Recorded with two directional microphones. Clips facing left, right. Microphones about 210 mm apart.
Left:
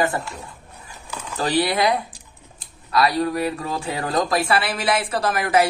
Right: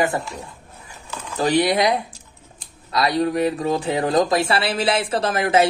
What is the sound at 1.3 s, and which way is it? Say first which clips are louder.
Speech: right 3 dB; 15° right (ahead or behind).